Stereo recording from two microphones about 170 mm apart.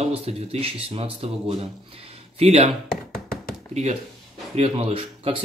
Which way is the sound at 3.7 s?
40° right (ahead or behind).